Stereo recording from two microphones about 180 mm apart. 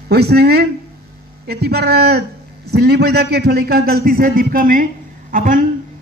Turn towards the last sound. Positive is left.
turn(degrees=-45)  # may be behind; listen again after turning